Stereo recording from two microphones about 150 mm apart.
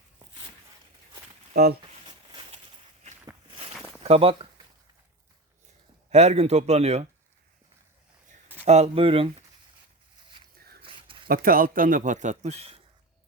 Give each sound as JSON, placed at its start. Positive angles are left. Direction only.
{"t": 1.5, "sound": "speech", "side_deg": -90}
{"t": 1.8, "sound": "a sound", "side_deg": -35}
{"t": 4.0, "sound": "speech", "side_deg": -40}
{"t": 6.1, "sound": "speech", "side_deg": -45}
{"t": 8.6, "sound": "speech", "side_deg": -45}
{"t": 11.3, "sound": "speech", "side_deg": -75}